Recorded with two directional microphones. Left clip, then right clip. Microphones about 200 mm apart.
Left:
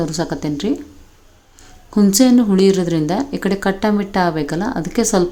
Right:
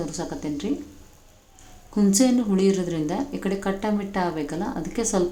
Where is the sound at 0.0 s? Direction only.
25° left (ahead or behind).